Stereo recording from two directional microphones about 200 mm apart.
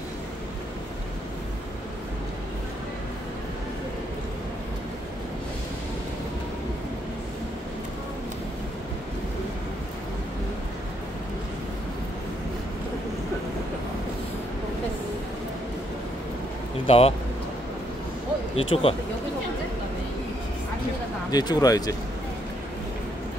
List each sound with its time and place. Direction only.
16.8 s speech: 30° left (ahead or behind)
18.6 s speech: 30° left (ahead or behind)
21.3 s speech: 20° left (ahead or behind)